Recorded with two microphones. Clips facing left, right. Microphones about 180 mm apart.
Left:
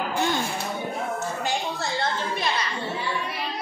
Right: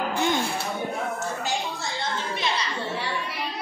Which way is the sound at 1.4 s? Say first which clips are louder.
Left 2 dB; 55° left (ahead or behind).